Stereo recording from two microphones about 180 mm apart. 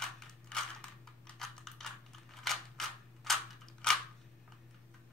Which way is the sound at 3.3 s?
Centre (ahead or behind).